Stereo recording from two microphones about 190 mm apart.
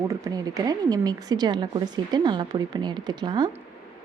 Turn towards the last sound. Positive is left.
turn(degrees=-25)  # may be behind; listen again after turning